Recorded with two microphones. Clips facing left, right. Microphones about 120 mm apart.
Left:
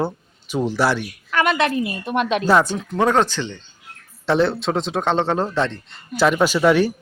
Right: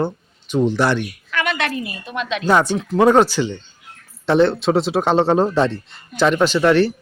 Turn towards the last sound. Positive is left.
turn(degrees=10)  # may be behind; listen again after turning